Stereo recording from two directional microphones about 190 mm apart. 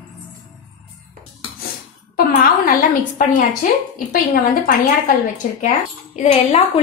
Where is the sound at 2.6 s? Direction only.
45° left (ahead or behind).